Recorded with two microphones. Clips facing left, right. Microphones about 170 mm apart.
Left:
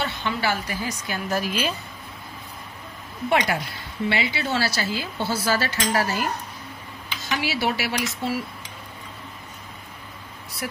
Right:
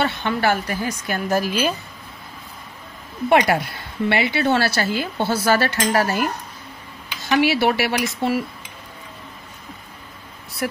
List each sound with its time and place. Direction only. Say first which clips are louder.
0.0 s a woman's voice: right 5 dB; 55° right (ahead or behind)
3.3 s speech: right 6 dB; 60° right (ahead or behind)
7.2 s speech: right 8 dB; 60° right (ahead or behind)
10.6 s speech: right 7 dB; 55° right (ahead or behind)